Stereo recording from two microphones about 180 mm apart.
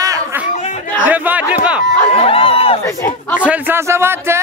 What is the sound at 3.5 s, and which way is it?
Speech, 15° right (ahead or behind).